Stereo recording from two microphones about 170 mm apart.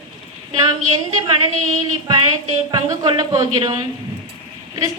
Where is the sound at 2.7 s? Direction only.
25° right (ahead or behind).